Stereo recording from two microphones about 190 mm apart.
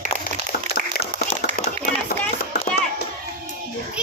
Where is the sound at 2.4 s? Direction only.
60° left (ahead or behind).